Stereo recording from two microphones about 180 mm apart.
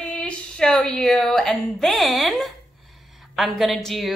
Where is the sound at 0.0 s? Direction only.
5° left (ahead or behind).